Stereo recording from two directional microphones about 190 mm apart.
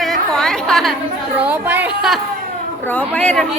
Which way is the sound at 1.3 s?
10° right (ahead or behind).